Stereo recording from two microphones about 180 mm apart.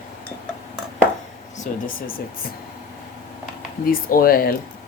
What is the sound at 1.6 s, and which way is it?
Speech, 50° left (ahead or behind).